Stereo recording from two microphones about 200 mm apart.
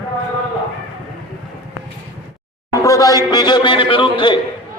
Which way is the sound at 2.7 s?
15° left (ahead or behind).